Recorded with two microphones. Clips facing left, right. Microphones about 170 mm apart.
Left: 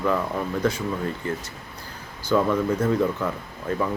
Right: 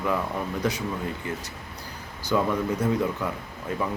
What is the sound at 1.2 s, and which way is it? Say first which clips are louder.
Speech: left 3 dB; 15° right (ahead or behind).